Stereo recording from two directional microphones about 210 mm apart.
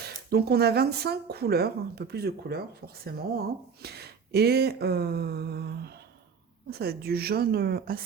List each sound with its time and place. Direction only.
0.3 s speech: 50° right (ahead or behind)